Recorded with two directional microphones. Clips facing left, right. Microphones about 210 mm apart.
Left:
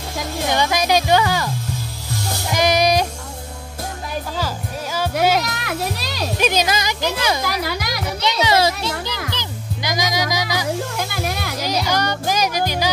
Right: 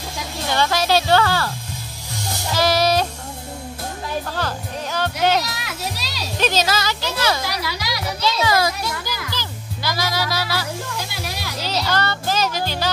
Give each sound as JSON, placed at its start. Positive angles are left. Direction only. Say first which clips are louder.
{"t": 0.5, "sound": "speech", "louder": "even", "side_deg": 15}
{"t": 2.5, "sound": "music", "louder": "left 1 dB", "side_deg": 15}
{"t": 4.4, "sound": "music", "louder": "even", "side_deg": 10}
{"t": 5.4, "sound": "children playing", "louder": "left 4 dB", "side_deg": 55}
{"t": 6.3, "sound": "speech", "louder": "left 1 dB", "side_deg": 15}
{"t": 7.4, "sound": "speech", "louder": "left 3 dB", "side_deg": 50}
{"t": 8.2, "sound": "music", "louder": "left 2 dB", "side_deg": 20}
{"t": 11.0, "sound": "music", "louder": "left 5 dB", "side_deg": 50}
{"t": 11.6, "sound": "music", "louder": "left 1 dB", "side_deg": 15}